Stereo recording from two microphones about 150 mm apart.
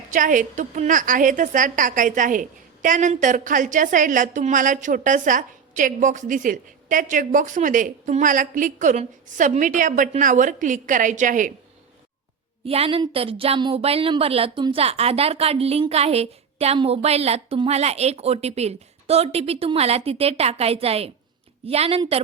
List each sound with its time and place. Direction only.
0.1 s a woman's voice: 60° right (ahead or behind)
12.6 s a woman's voice: 40° right (ahead or behind)